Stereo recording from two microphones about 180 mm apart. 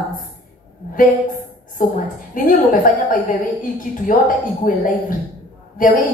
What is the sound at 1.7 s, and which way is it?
Speech, 50° left (ahead or behind).